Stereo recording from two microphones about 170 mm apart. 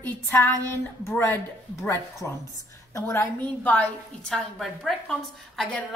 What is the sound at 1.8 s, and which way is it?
A woman's voice, 15° left (ahead or behind).